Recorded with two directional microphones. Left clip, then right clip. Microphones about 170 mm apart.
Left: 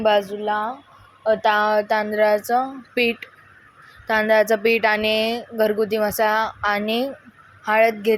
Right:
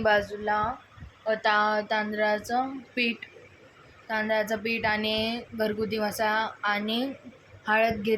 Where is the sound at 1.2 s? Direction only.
35° left (ahead or behind).